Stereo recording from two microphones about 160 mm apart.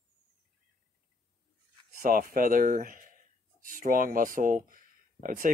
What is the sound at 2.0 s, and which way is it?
Speech, 60° right (ahead or behind).